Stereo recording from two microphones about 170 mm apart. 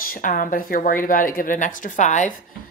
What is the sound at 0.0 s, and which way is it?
A woman's voice, 55° left (ahead or behind).